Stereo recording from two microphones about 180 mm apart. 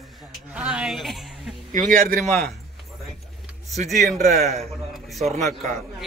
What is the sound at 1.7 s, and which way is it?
Speech, 50° right (ahead or behind).